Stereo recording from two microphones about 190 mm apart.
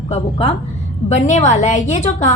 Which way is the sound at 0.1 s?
35° left (ahead or behind).